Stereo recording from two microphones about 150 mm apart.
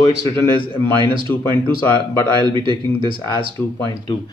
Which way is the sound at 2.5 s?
35° right (ahead or behind).